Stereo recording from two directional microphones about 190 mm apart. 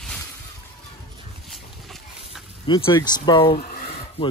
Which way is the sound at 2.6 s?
25° left (ahead or behind).